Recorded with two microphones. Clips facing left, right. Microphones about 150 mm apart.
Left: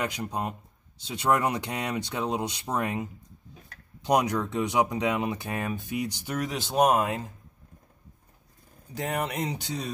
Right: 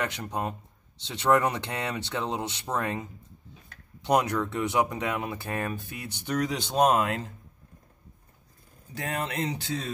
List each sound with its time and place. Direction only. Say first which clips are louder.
0.0 s speech: even; 10° left (ahead or behind)
8.9 s speech: left 2 dB; 15° left (ahead or behind)